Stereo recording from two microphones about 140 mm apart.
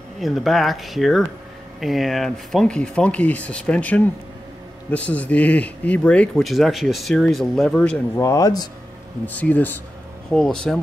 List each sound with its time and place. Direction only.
0.2 s speech: centre (ahead or behind)
8.2 s speech: 25° left (ahead or behind)
9.2 s speech: 10° left (ahead or behind)